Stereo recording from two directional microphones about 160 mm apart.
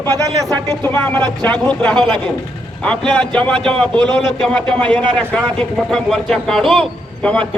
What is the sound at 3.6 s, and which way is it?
Speech, 35° right (ahead or behind).